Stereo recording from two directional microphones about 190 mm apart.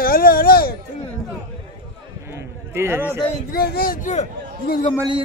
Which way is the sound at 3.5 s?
55° left (ahead or behind).